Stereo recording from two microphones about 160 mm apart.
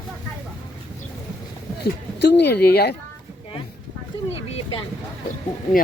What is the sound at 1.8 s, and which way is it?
Speech, 90° left.